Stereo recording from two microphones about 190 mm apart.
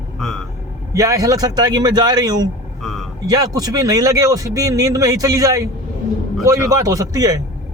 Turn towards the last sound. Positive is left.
turn(degrees=-20)  # may be behind; listen again after turning